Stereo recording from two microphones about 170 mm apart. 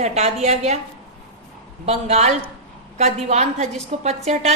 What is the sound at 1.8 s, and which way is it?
A woman's voice, 40° right (ahead or behind).